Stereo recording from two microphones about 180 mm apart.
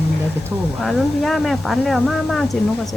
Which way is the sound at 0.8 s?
Centre (ahead or behind).